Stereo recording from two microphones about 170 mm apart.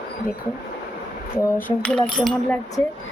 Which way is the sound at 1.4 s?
10° left (ahead or behind).